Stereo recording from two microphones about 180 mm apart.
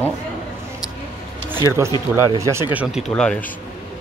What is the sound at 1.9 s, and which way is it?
Speech, 20° left (ahead or behind).